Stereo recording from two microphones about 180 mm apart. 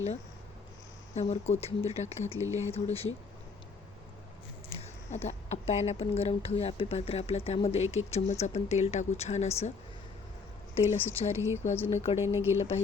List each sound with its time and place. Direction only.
1.3 s speech: 35° left (ahead or behind)
2.4 s speech: 15° right (ahead or behind)
2.7 s speech: 35° left (ahead or behind)
4.8 s speech: 40° left (ahead or behind)
10.9 s speech: 10° left (ahead or behind)
11.3 s speech: 15° right (ahead or behind)
11.9 s speech: 35° left (ahead or behind)
12.2 s speech: 15° right (ahead or behind)
12.5 s speech: 35° left (ahead or behind)